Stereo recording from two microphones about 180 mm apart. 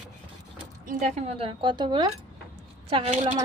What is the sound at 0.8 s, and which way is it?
A woman's voice, 40° right (ahead or behind).